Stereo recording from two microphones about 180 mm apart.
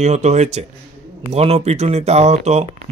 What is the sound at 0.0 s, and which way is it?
A man's voice, 40° right (ahead or behind).